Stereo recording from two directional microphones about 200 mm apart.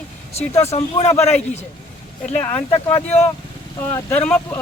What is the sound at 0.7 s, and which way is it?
Speech, 30° left (ahead or behind).